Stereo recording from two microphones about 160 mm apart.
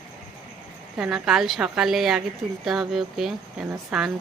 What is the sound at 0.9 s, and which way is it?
Speech, 5° right (ahead or behind).